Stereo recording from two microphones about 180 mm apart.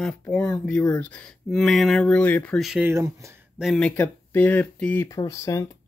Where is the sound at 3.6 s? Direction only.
5° left (ahead or behind).